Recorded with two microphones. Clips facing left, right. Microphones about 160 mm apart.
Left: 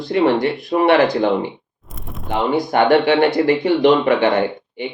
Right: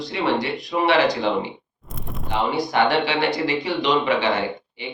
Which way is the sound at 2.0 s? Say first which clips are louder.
Left 1 dB; centre (ahead or behind).